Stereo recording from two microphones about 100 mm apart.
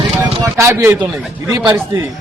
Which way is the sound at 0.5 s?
25° right (ahead or behind).